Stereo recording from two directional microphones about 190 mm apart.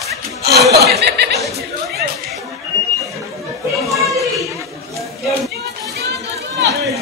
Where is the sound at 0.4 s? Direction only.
60° right (ahead or behind).